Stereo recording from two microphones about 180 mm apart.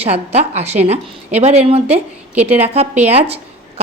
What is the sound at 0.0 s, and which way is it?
A woman's voice, 35° right (ahead or behind).